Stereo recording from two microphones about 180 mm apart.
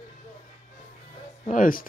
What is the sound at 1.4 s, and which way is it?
Speech, 50° left (ahead or behind).